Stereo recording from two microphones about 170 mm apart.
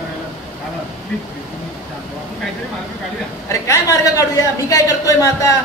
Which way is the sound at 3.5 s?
20° left (ahead or behind).